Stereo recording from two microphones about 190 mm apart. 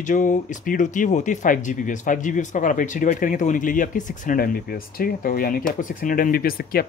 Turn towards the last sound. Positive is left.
turn(degrees=50)  # may be behind; listen again after turning